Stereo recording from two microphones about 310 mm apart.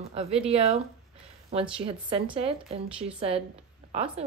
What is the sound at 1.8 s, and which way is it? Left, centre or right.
A woman's voice, centre.